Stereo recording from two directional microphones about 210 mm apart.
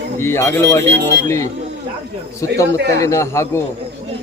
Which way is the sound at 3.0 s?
15° left (ahead or behind).